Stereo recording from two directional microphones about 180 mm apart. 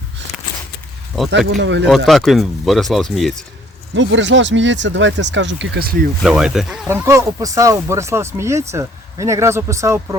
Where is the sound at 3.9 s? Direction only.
90° right; by 6.1 s 60° right (ahead or behind).